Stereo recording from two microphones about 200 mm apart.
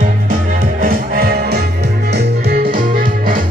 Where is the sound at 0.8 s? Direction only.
45° right (ahead or behind).